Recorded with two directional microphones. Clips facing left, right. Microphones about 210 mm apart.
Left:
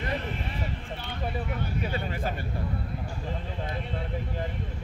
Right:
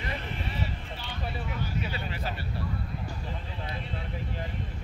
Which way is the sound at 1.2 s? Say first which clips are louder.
Left 3 dB; 50° left (ahead or behind).